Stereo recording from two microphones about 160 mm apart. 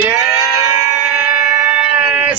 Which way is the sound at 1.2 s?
15° right (ahead or behind).